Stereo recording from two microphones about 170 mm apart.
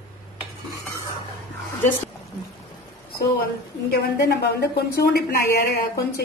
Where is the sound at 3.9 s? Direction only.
70° left (ahead or behind).